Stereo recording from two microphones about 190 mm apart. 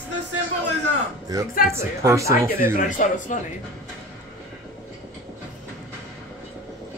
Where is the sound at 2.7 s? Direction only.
45° left (ahead or behind).